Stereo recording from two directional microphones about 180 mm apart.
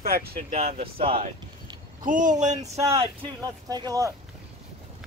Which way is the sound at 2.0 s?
45° right (ahead or behind).